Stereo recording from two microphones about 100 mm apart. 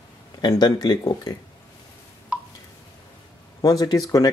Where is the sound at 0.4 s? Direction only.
45° left (ahead or behind).